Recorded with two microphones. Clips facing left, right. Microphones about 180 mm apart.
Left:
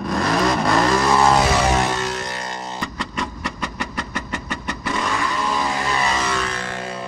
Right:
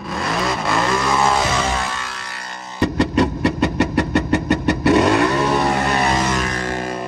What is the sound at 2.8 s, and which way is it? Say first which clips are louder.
Vehicle: right 15 dB; 70° right (ahead or behind).